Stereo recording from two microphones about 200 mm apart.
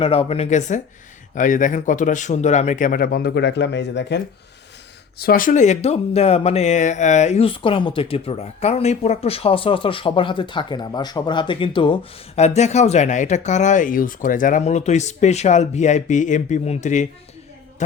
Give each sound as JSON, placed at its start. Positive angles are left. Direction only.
{"t": 0.0, "sound": "speech", "side_deg": 30}
{"t": 5.1, "sound": "speech", "side_deg": 45}